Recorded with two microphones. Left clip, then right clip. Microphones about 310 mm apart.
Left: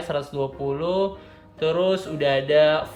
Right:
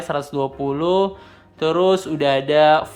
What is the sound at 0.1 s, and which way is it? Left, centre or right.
Speech, centre.